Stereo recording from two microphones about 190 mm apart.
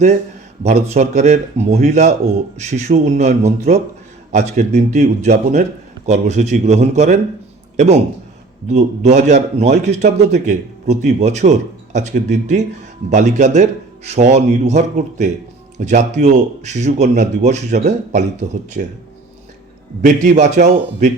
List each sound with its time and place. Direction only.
0.6 s a man's voice: 35° right (ahead or behind)
8.6 s a man's voice: 35° right (ahead or behind)
20.0 s a man's voice: 40° right (ahead or behind)